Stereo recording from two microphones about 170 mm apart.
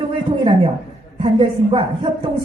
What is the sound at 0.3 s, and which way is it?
A woman's voice, 30° right (ahead or behind).